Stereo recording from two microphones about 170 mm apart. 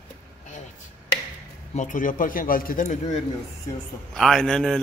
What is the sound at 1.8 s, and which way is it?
Speech, 50° left (ahead or behind).